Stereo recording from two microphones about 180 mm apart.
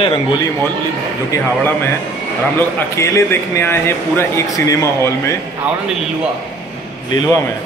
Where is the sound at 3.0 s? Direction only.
15° left (ahead or behind).